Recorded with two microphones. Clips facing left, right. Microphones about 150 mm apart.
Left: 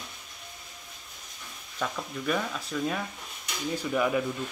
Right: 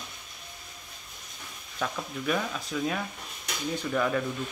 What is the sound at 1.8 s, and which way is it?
Speech, centre (ahead or behind).